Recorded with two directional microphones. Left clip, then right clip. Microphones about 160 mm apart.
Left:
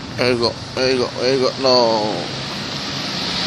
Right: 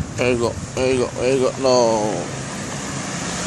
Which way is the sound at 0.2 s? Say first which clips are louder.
Left 2 dB; centre (ahead or behind).